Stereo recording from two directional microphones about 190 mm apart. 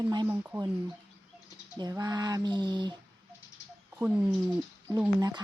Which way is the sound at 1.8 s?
20° right (ahead or behind).